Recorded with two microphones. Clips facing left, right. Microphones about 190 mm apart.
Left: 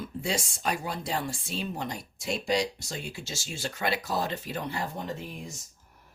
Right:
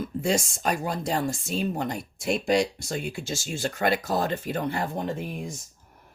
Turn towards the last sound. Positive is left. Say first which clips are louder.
# right 6 dB
turn(degrees=-55)  # may be behind; listen again after turning